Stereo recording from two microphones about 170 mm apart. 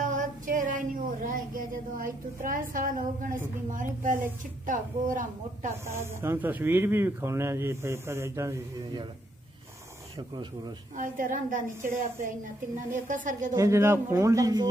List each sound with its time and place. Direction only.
0.0 s female singing: 50° right (ahead or behind)
3.7 s a woman's voice: 50° right (ahead or behind)
5.9 s speech: 15° right (ahead or behind)
10.1 s speech: 25° right (ahead or behind)
11.0 s a woman's voice: 50° right (ahead or behind)
13.6 s speech: 15° right (ahead or behind)